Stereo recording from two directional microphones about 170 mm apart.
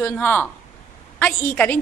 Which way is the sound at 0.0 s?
10° left (ahead or behind).